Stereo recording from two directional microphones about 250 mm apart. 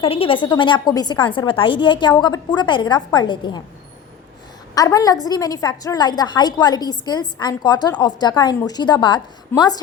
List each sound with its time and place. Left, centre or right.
0.0 s a woman's voice: left
4.7 s a woman's voice: centre